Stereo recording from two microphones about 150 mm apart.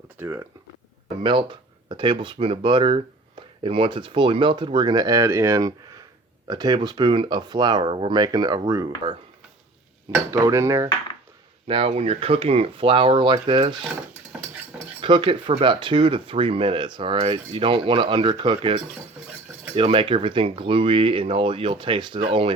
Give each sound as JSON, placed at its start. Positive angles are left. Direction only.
{"t": 0.2, "sound": "speech", "side_deg": -15}
{"t": 1.2, "sound": "speech", "side_deg": -30}
{"t": 10.3, "sound": "speech", "side_deg": -20}
{"t": 11.7, "sound": "speech", "side_deg": -40}
{"t": 15.0, "sound": "speech", "side_deg": -35}